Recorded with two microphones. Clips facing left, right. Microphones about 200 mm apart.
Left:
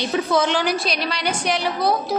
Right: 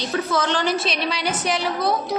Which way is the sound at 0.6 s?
Centre (ahead or behind).